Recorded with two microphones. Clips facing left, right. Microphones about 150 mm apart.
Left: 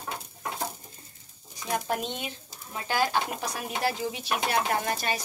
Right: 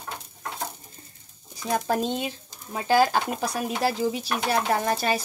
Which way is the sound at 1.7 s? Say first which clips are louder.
Right 5 dB; 35° right (ahead or behind).